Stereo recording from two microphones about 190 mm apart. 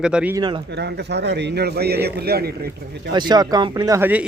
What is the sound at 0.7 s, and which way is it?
A man's voice, 60° right (ahead or behind).